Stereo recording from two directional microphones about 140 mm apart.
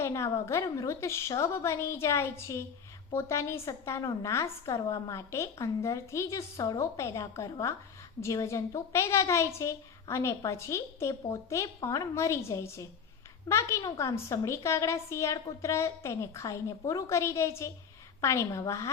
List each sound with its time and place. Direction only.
0.0 s a woman's voice: 20° left (ahead or behind)